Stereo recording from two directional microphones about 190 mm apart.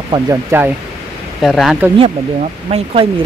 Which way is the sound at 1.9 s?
35° right (ahead or behind).